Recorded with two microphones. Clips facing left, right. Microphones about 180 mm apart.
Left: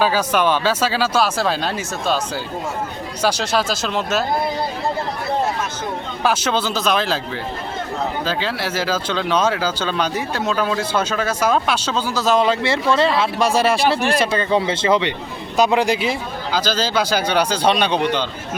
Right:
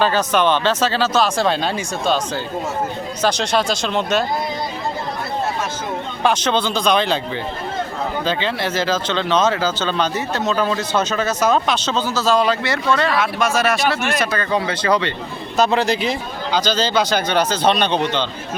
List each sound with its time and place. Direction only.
0.0 s speech: 10° left (ahead or behind)
6.2 s speech: 5° left (ahead or behind)
8.2 s speech: 5° left (ahead or behind)